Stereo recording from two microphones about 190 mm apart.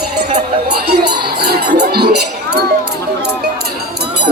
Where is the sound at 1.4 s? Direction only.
55° right (ahead or behind).